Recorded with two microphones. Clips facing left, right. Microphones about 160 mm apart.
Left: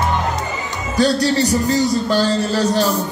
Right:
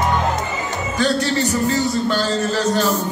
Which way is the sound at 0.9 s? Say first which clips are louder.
Left 4 dB; 35° left (ahead or behind).